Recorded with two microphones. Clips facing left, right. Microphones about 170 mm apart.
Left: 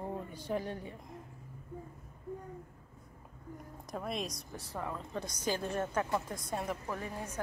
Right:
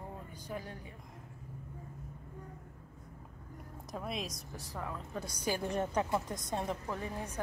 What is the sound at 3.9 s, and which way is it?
A woman's voice, centre (ahead or behind).